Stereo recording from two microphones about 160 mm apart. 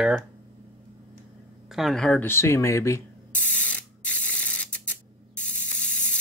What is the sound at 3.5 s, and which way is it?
Spray, 10° left (ahead or behind).